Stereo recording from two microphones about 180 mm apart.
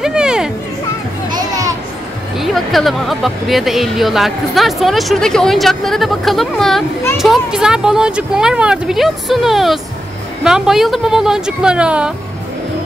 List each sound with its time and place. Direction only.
0.0 s a sound: 5° right (ahead or behind)
1.3 s children playing: 20° right (ahead or behind)
2.3 s speech: centre (ahead or behind)